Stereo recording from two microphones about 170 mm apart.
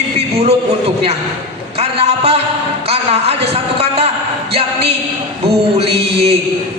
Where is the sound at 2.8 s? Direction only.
35° right (ahead or behind).